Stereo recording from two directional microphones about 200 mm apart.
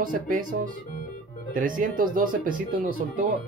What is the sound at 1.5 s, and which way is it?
Speech, 45° right (ahead or behind).